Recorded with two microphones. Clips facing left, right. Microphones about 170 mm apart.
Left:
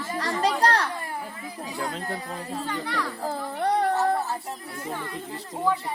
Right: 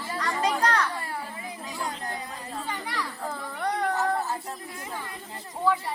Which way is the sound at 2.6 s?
10° right (ahead or behind).